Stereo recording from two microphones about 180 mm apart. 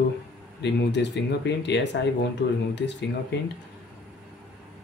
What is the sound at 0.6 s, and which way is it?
Speech, 70° left (ahead or behind).